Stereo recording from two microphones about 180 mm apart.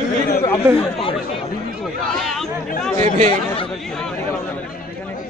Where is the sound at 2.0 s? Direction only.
Centre (ahead or behind).